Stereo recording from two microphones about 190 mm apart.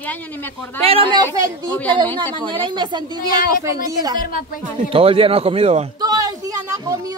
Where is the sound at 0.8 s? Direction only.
30° right (ahead or behind).